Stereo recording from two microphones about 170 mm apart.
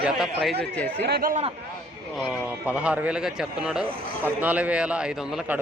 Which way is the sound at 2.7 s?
5° right (ahead or behind).